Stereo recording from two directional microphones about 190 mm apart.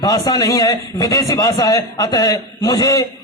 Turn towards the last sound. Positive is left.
turn(degrees=20)  # may be behind; listen again after turning